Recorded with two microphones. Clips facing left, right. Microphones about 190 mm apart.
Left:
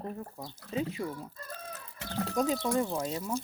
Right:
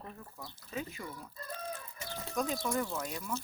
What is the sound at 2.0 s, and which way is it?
Chicken, 70° left (ahead or behind).